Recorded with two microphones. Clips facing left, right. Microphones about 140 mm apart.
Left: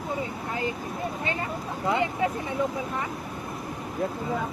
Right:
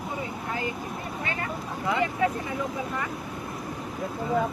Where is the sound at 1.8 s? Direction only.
25° left (ahead or behind).